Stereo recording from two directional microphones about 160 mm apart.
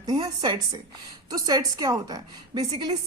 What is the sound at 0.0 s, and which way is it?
Speech, 25° right (ahead or behind).